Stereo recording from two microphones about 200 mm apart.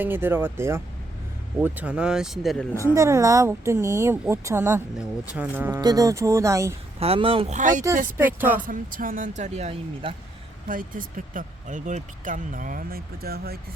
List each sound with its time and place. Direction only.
0.0 s speech: 10° right (ahead or behind)
2.9 s speech: 15° right (ahead or behind)
7.0 s speech: 30° right (ahead or behind)
8.2 s speech: 10° right (ahead or behind)
8.6 s speech: 45° right (ahead or behind)
10.7 s speech: 45° right (ahead or behind)